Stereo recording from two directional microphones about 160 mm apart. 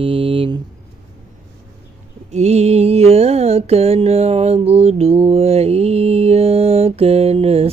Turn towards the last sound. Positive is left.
turn(degrees=-40)  # may be behind; listen again after turning